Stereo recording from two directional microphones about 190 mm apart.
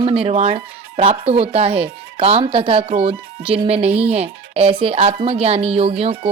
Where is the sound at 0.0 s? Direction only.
30° right (ahead or behind).